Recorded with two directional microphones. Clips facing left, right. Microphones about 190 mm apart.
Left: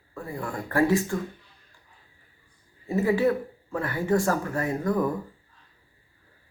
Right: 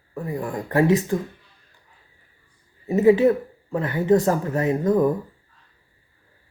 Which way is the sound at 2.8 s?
20° right (ahead or behind).